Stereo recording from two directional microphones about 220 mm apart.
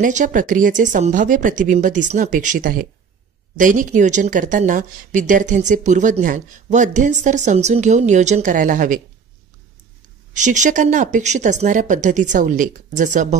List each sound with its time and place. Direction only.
0.0 s speech: 35° right (ahead or behind)
10.3 s speech: 35° right (ahead or behind)